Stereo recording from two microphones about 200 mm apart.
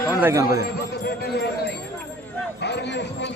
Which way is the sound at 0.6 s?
50° left (ahead or behind).